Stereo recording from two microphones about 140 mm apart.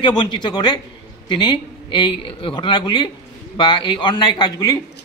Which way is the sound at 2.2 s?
40° left (ahead or behind).